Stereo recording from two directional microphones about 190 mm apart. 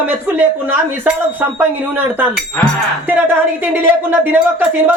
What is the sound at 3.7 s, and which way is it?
Speech, 10° right (ahead or behind).